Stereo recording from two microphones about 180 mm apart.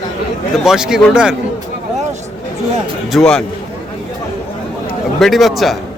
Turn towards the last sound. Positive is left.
turn(degrees=0)  # may be behind; listen again after turning